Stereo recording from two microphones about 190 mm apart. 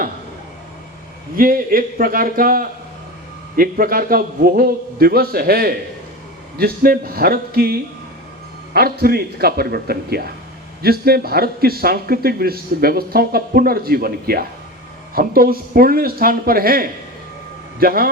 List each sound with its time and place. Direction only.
1.4 s speech: 50° right (ahead or behind)